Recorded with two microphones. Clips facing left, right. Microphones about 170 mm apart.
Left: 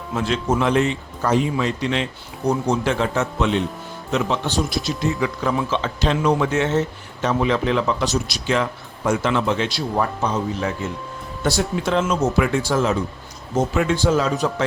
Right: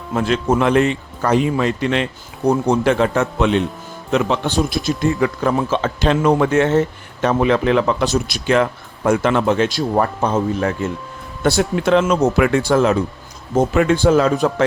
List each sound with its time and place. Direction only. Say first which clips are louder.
0.1 s a man's voice: right 4 dB; 55° right (ahead or behind)